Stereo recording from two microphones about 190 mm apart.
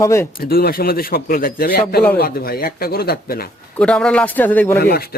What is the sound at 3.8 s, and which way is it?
Speech, 5° left (ahead or behind).